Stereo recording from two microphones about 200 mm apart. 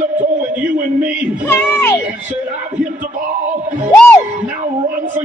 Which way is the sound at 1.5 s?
10° left (ahead or behind).